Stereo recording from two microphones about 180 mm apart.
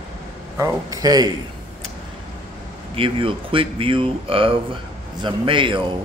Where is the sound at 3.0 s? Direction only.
30° right (ahead or behind).